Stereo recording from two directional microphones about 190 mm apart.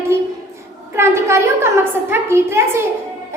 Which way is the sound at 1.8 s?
10° right (ahead or behind).